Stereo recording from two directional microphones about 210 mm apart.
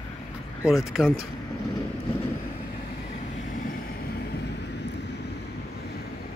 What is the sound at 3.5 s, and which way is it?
Vehicle, 45° left (ahead or behind).